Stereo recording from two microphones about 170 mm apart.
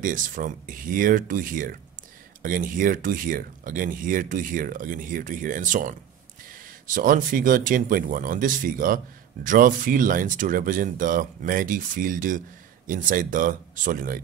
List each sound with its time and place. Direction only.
0.0 s speech: 50° right (ahead or behind)